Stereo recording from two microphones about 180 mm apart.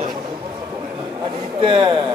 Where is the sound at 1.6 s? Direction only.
30° right (ahead or behind).